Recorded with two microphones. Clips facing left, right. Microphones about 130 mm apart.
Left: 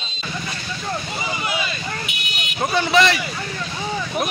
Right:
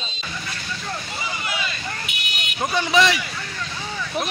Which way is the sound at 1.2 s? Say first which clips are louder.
Left 3 dB; 20° left (ahead or behind).